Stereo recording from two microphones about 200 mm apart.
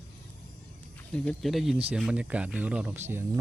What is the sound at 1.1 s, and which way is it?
Speech, centre (ahead or behind).